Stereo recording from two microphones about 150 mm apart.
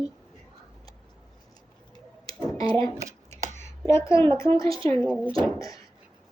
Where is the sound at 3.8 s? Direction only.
20° left (ahead or behind).